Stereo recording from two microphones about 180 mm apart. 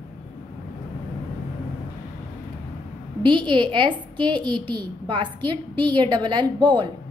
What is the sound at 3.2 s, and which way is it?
A woman's voice, 25° right (ahead or behind).